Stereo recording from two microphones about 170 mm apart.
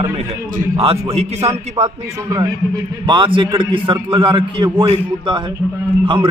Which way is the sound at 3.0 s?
30° right (ahead or behind).